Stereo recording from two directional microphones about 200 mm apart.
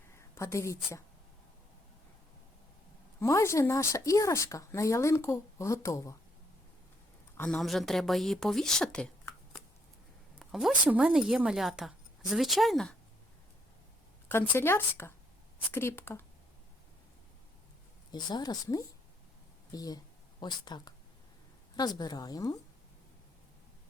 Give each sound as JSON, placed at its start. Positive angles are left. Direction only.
{"t": 0.2, "sound": "speech", "side_deg": 15}
{"t": 3.2, "sound": "speech", "side_deg": 15}
{"t": 7.3, "sound": "a woman's voice", "side_deg": 5}
{"t": 10.5, "sound": "a woman's voice", "side_deg": -5}
{"t": 14.5, "sound": "speech", "side_deg": 10}
{"t": 18.1, "sound": "a woman's voice", "side_deg": 20}